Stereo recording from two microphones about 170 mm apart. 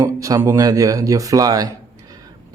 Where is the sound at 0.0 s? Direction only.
20° right (ahead or behind).